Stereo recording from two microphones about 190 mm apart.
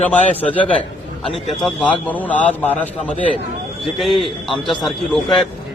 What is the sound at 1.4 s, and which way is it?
A man's voice, 5° left (ahead or behind).